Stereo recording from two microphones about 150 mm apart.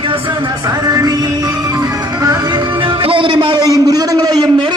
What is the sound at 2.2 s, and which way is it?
Music, 25° right (ahead or behind).